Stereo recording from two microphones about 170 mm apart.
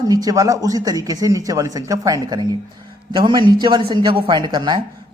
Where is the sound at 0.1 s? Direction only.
20° right (ahead or behind).